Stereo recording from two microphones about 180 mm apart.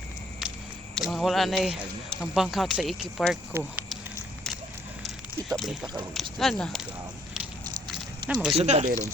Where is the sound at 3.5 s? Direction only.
5° right (ahead or behind).